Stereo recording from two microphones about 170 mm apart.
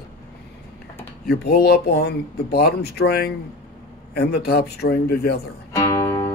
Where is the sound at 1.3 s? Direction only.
70° left (ahead or behind).